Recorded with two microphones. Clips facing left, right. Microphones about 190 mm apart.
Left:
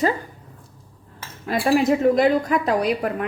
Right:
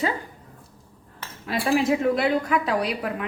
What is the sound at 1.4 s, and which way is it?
A woman's voice, 45° left (ahead or behind).